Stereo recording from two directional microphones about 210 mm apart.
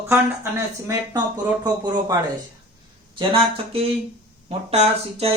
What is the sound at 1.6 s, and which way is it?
Speech, 15° right (ahead or behind).